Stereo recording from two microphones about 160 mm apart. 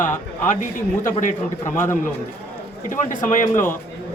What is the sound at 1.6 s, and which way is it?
Speech, 15° left (ahead or behind).